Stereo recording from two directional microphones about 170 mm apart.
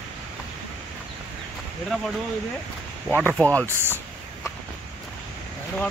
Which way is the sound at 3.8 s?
15° right (ahead or behind).